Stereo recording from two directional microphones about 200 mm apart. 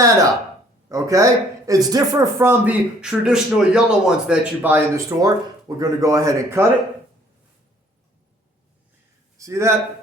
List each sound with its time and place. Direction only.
0.9 s speech: 15° right (ahead or behind)
9.4 s a man's voice: 15° right (ahead or behind)